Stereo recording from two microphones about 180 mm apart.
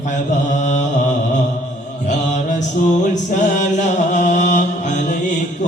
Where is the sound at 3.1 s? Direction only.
45° left (ahead or behind).